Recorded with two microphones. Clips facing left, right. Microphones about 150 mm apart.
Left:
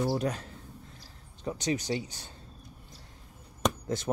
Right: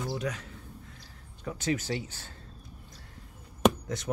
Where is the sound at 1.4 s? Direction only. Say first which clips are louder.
Even; 20° left (ahead or behind).